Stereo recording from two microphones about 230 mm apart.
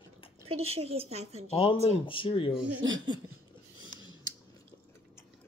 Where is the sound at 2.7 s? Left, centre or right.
Right.